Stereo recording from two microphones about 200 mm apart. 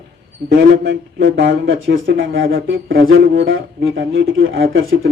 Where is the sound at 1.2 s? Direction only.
60° right (ahead or behind).